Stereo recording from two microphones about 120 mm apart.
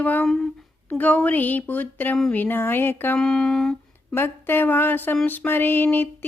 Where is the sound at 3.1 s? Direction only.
5° left (ahead or behind).